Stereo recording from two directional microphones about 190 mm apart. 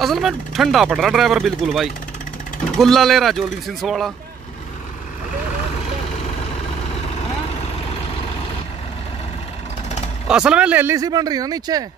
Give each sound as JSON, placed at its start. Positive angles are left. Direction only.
{"t": 0.0, "sound": "speech", "side_deg": 0}
{"t": 10.2, "sound": "speech", "side_deg": -5}